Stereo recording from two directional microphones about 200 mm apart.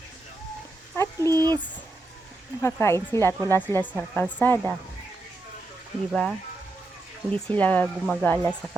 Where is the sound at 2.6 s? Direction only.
10° left (ahead or behind).